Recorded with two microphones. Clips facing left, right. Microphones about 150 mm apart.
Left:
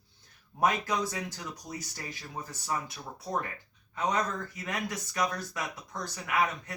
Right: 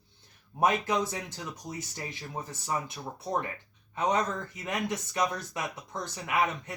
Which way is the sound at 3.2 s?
25° right (ahead or behind).